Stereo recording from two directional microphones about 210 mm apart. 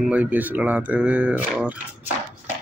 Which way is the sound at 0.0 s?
5° right (ahead or behind).